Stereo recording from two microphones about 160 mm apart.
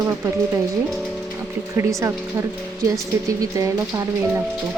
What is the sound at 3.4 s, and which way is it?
Speech, 20° right (ahead or behind).